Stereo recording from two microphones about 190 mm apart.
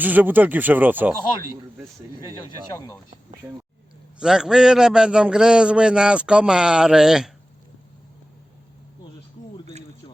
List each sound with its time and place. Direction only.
0.0 s speech: 10° right (ahead or behind)
2.7 s speech: 15° left (ahead or behind)
4.2 s a man's voice: 5° right (ahead or behind)